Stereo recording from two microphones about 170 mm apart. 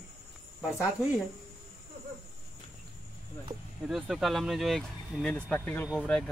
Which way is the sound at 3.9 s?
Centre (ahead or behind).